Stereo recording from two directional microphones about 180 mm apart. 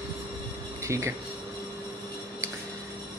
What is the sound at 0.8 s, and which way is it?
Speech, 15° right (ahead or behind).